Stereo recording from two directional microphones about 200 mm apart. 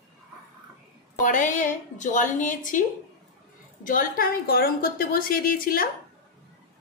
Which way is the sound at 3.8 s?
45° left (ahead or behind).